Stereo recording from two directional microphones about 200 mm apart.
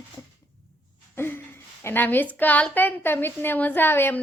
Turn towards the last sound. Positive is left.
turn(degrees=10)  # may be behind; listen again after turning